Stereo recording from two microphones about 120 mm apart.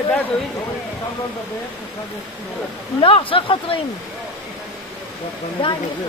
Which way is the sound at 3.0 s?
50° left (ahead or behind).